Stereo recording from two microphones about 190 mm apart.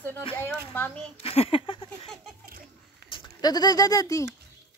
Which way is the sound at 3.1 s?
25° left (ahead or behind).